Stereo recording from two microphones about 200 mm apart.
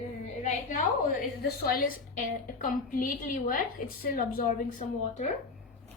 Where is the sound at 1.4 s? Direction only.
50° left (ahead or behind).